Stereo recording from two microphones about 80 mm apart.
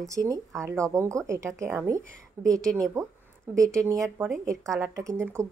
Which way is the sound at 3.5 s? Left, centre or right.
Right.